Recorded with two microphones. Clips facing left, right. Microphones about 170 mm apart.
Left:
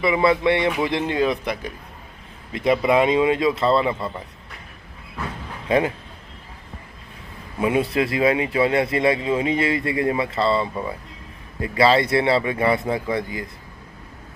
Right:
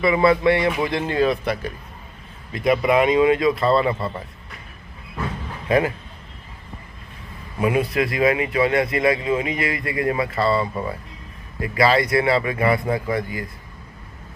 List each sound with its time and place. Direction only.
0.0 s speech: 20° left (ahead or behind)
5.6 s a man's voice: 25° left (ahead or behind)
7.6 s speech: 25° left (ahead or behind)